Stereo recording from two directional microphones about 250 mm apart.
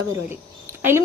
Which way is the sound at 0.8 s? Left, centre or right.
Centre.